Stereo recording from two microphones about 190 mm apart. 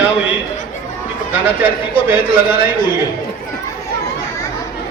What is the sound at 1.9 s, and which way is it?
Speech, 10° right (ahead or behind).